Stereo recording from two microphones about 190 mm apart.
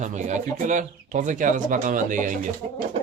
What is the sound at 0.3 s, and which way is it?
Speech, 40° right (ahead or behind).